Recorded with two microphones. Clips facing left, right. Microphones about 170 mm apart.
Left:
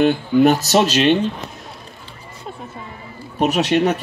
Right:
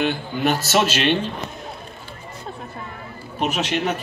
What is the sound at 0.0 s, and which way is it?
Speech, 45° left (ahead or behind).